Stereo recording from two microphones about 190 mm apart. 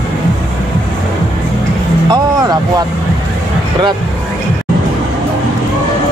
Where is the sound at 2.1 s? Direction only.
20° right (ahead or behind).